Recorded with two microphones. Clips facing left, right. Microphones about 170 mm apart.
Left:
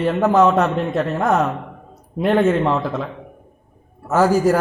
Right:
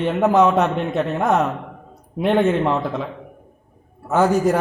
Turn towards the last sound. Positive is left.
turn(degrees=0)  # may be behind; listen again after turning